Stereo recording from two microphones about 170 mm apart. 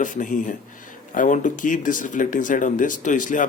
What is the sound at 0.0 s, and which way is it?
Speech, 50° left (ahead or behind).